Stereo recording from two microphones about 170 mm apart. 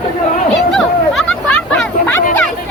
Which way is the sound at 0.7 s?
5° left (ahead or behind).